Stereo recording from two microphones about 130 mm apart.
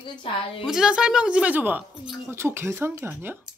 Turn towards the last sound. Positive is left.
turn(degrees=-15)  # may be behind; listen again after turning